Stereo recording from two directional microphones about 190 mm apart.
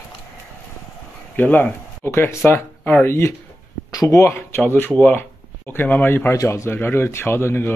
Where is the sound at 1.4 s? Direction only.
10° left (ahead or behind).